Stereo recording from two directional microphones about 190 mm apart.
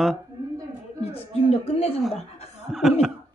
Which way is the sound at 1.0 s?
30° left (ahead or behind).